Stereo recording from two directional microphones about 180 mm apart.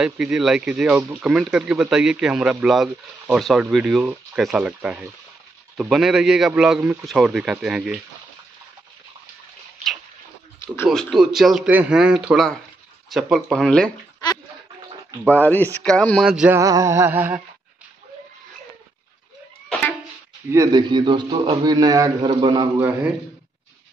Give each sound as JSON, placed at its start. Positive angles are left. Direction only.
{"t": 0.0, "sound": "speech", "side_deg": -5}
{"t": 10.9, "sound": "speech", "side_deg": 0}
{"t": 15.2, "sound": "speech", "side_deg": 10}
{"t": 16.5, "sound": "a sound", "side_deg": -15}
{"t": 20.5, "sound": "a man's voice", "side_deg": -25}